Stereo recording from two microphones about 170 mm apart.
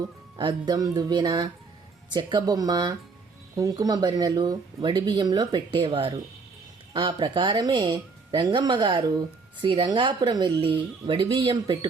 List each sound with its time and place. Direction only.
0.3 s speech: 25° right (ahead or behind)